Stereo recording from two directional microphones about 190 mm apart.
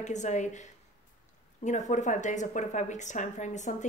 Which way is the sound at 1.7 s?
40° left (ahead or behind).